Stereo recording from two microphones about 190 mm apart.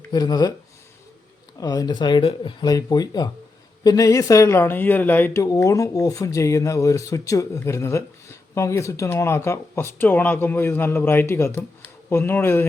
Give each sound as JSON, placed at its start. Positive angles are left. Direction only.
{"t": 0.1, "sound": "speech", "side_deg": 20}
{"t": 1.5, "sound": "speech", "side_deg": 20}